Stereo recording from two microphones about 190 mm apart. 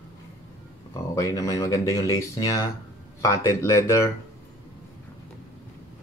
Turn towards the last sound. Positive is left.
turn(degrees=15)  # may be behind; listen again after turning